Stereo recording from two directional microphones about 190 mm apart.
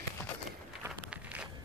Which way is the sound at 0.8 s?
5° right (ahead or behind).